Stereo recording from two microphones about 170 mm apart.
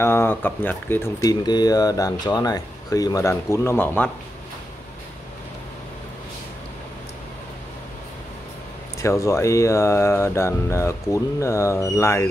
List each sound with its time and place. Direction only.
0.0 s speech: 15° left (ahead or behind)
9.0 s speech: 15° left (ahead or behind)